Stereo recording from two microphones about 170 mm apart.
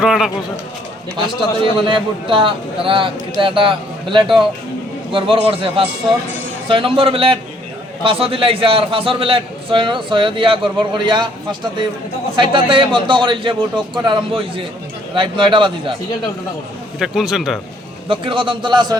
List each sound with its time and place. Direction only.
0.0 s a man's voice: 5° right (ahead or behind)
1.9 s a man's voice: 30° right (ahead or behind)
17.0 s a man's voice: centre (ahead or behind)
18.1 s a man's voice: 30° right (ahead or behind)